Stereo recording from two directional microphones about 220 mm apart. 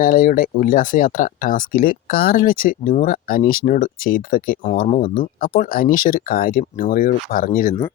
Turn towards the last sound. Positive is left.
turn(degrees=35)  # may be behind; listen again after turning